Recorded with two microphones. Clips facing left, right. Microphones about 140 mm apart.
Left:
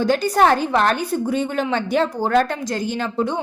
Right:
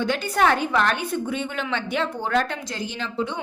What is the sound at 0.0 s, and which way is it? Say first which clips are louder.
A woman's voice: left 5 dB; 35° left (ahead or behind).